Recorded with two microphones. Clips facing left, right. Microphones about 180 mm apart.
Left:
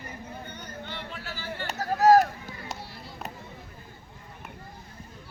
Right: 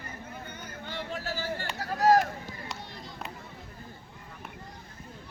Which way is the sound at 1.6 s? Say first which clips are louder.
Left 4 dB; 40° left (ahead or behind).